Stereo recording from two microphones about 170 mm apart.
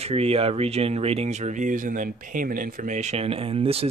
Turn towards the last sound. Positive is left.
turn(degrees=-35)  # may be behind; listen again after turning